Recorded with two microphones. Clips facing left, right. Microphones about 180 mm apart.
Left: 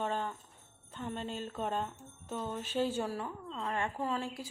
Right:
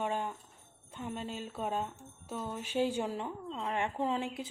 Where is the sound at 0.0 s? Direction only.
10° right (ahead or behind).